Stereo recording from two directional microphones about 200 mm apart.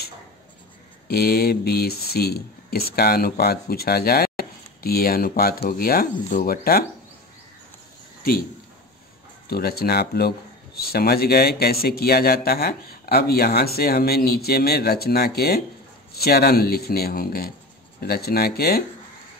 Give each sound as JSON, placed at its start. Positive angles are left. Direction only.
{"t": 1.0, "sound": "speech", "side_deg": 50}
{"t": 9.5, "sound": "speech", "side_deg": 50}